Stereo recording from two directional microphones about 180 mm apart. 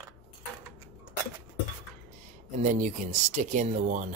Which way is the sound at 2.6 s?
45° right (ahead or behind).